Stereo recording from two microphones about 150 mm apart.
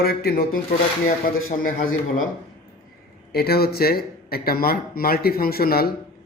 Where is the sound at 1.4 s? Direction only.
65° left (ahead or behind).